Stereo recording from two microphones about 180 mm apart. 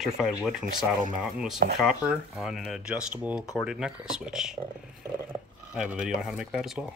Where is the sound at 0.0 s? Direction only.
5° right (ahead or behind).